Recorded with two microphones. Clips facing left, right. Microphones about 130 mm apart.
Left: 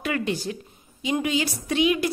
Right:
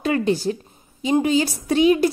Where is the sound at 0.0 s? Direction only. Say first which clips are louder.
Right 7 dB; 30° right (ahead or behind).